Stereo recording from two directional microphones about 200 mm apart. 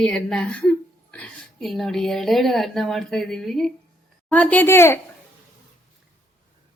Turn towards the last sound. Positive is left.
turn(degrees=10)  # may be behind; listen again after turning